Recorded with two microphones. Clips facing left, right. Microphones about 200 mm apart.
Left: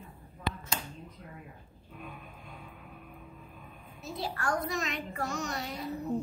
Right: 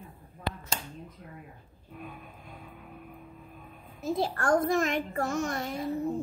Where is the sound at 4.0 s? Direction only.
50° right (ahead or behind).